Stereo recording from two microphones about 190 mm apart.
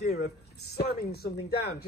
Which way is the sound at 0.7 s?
55° left (ahead or behind).